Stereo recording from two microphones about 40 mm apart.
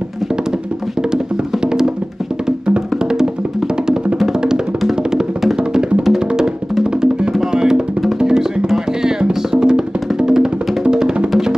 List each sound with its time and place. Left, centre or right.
1.1 s music: centre
5.6 s music: right